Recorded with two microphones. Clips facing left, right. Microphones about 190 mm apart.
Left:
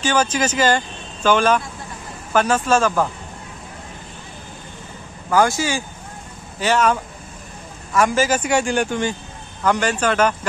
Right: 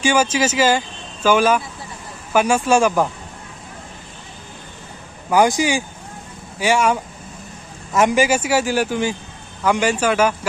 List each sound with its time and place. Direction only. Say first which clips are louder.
0.0 s speech: right 2 dB; 10° right (ahead or behind)
5.3 s speech: right 2 dB; 15° right (ahead or behind)